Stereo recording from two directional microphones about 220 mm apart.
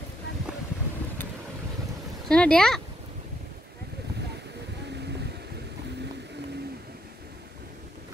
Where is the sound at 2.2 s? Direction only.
5° left (ahead or behind).